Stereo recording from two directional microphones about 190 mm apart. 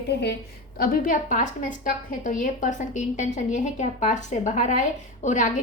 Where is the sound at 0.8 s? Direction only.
50° left (ahead or behind).